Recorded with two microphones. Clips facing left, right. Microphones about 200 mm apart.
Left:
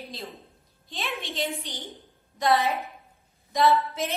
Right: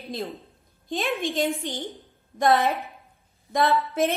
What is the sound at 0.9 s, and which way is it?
A woman's voice, 50° right (ahead or behind).